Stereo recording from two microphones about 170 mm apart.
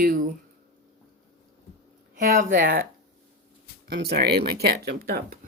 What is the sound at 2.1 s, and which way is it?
Speech, 55° right (ahead or behind).